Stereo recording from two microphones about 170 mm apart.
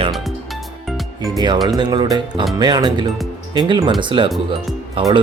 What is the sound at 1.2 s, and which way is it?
Speech, 25° right (ahead or behind).